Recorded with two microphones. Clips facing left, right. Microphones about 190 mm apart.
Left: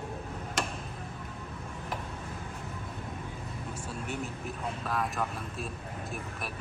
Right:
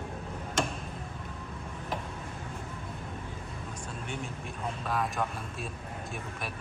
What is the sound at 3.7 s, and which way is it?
Speech, 5° left (ahead or behind).